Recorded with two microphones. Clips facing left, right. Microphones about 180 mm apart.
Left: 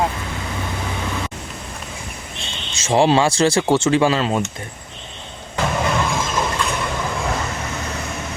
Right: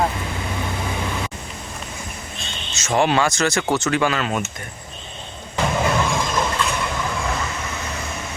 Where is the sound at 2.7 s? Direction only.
30° left (ahead or behind).